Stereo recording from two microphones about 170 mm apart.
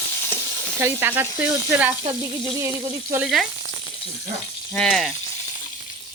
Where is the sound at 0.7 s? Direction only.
15° right (ahead or behind).